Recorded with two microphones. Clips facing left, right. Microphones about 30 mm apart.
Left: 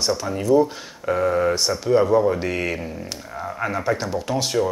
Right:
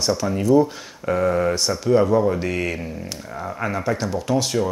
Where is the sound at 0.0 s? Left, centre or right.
Centre.